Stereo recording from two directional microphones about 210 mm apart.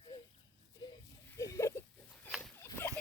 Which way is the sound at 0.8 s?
20° left (ahead or behind).